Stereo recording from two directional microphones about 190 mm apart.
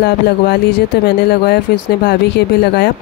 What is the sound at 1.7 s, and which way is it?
Speech, 55° left (ahead or behind).